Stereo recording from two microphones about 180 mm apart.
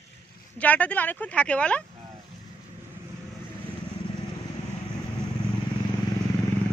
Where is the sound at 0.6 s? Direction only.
10° left (ahead or behind).